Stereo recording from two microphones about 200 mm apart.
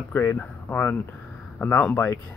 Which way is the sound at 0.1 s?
10° left (ahead or behind).